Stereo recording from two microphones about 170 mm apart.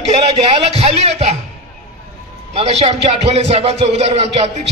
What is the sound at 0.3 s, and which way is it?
A man's voice, 35° right (ahead or behind).